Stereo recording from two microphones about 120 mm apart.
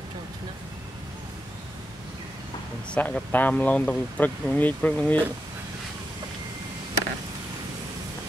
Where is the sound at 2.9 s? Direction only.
15° left (ahead or behind).